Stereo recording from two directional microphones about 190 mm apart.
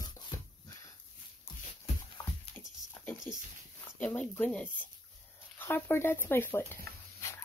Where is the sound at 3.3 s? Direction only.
45° left (ahead or behind).